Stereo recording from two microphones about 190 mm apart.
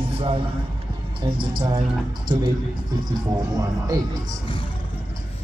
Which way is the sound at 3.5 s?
20° right (ahead or behind).